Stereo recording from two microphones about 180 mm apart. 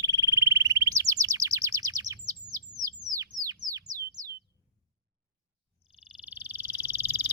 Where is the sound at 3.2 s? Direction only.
20° right (ahead or behind).